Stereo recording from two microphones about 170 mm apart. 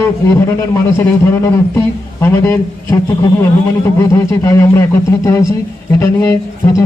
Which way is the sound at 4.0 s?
20° left (ahead or behind).